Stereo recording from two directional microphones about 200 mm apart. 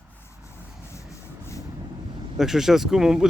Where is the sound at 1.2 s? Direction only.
15° left (ahead or behind).